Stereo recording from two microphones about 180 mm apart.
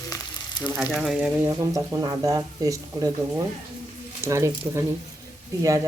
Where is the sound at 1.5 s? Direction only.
15° right (ahead or behind).